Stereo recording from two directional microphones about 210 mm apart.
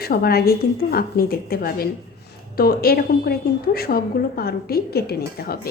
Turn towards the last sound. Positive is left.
turn(degrees=50)  # may be behind; listen again after turning